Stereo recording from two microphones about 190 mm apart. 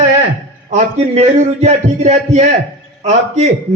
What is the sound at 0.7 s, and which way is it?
A man's voice, 35° right (ahead or behind).